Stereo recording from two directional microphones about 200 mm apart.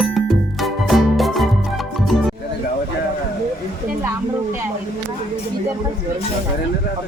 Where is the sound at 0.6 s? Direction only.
Centre (ahead or behind).